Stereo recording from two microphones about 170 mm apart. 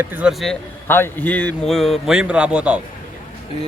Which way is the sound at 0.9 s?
15° left (ahead or behind).